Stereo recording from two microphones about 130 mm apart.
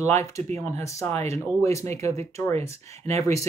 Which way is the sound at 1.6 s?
25° left (ahead or behind).